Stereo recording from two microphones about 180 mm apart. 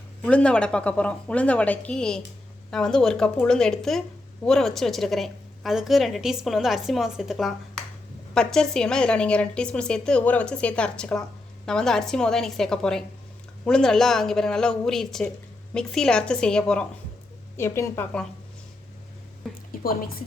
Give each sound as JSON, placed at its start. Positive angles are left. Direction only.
{"t": 0.2, "sound": "a woman's voice", "side_deg": 5}
{"t": 17.6, "sound": "a woman's voice", "side_deg": 15}
{"t": 19.8, "sound": "a woman's voice", "side_deg": 55}